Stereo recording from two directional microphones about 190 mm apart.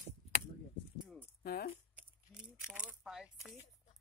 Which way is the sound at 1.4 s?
55° left (ahead or behind).